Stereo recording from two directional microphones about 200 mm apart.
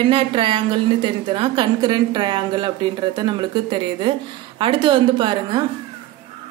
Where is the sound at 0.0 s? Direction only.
25° right (ahead or behind).